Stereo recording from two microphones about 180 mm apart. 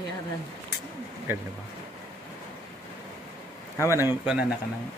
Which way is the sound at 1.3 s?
10° right (ahead or behind).